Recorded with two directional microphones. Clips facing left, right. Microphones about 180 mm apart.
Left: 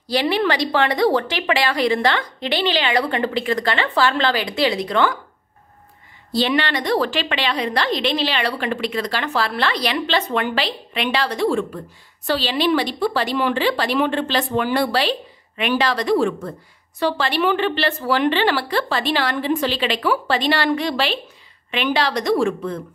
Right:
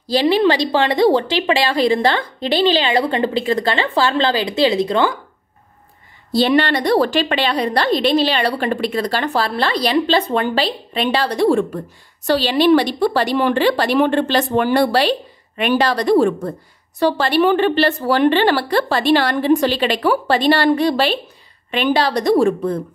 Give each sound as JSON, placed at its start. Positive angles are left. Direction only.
{"t": 0.1, "sound": "a woman's voice", "side_deg": -30}
{"t": 6.4, "sound": "a woman's voice", "side_deg": -40}